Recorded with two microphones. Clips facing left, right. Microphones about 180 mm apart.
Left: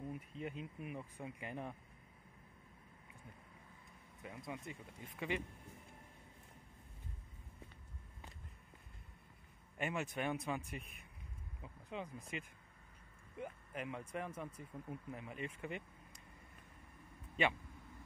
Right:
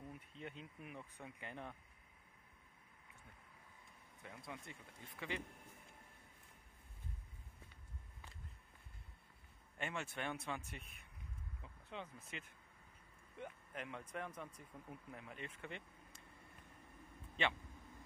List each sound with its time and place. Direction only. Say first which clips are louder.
0.4 s speech: left 5 dB; 5° left (ahead or behind)
4.2 s speech: left 5 dB; 15° left (ahead or behind)
9.8 s speech: left 5 dB; 15° left (ahead or behind)